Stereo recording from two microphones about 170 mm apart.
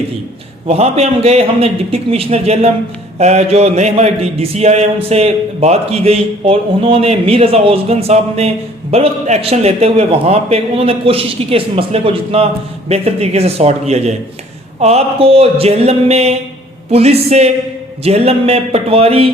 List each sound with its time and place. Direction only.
0.7 s speech: 35° right (ahead or behind)